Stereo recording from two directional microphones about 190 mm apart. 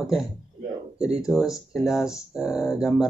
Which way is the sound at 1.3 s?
Centre (ahead or behind).